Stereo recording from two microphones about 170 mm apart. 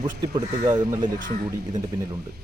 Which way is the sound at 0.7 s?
25° right (ahead or behind).